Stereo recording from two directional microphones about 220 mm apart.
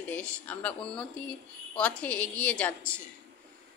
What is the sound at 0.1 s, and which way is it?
A woman's voice, 5° left (ahead or behind).